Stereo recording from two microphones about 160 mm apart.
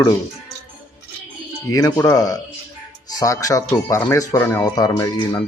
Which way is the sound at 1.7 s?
20° left (ahead or behind).